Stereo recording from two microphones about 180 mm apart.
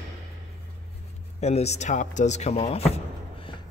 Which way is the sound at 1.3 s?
35° left (ahead or behind).